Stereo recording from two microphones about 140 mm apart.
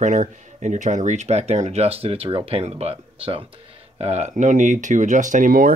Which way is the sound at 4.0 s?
55° right (ahead or behind).